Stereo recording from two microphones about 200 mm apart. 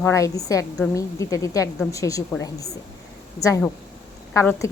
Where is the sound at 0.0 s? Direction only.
15° left (ahead or behind).